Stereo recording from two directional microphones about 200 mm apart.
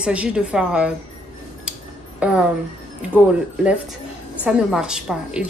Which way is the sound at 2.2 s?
5° right (ahead or behind).